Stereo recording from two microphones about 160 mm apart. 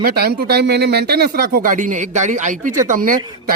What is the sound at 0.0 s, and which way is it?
Speech, 70° right (ahead or behind).